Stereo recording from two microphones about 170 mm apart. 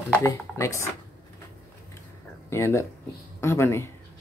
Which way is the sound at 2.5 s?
15° left (ahead or behind).